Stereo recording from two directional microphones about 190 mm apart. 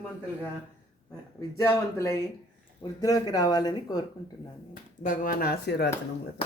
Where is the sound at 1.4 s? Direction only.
15° left (ahead or behind).